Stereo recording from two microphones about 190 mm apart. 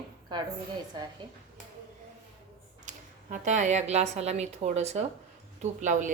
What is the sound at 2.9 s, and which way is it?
A woman's voice, 40° right (ahead or behind).